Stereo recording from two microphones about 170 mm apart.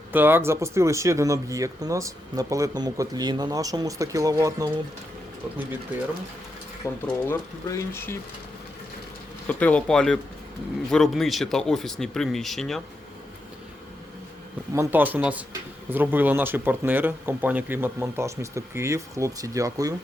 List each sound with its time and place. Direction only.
0.1 s speech: 10° right (ahead or behind)
6.8 s speech: 15° left (ahead or behind)
9.5 s speech: 10° left (ahead or behind)
14.7 s speech: 15° right (ahead or behind)